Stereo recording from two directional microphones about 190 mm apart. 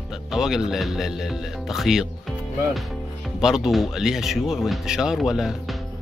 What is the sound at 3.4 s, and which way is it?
Speech, centre (ahead or behind).